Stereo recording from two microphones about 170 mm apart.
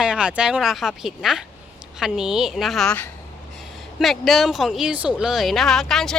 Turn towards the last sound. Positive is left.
turn(degrees=0)  # may be behind; listen again after turning